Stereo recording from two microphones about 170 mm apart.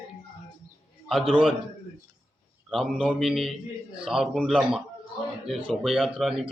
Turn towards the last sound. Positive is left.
turn(degrees=0)  # may be behind; listen again after turning